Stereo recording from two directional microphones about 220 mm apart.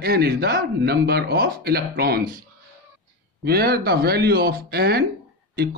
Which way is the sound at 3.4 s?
45° right (ahead or behind).